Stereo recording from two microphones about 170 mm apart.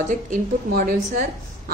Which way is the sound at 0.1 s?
55° right (ahead or behind).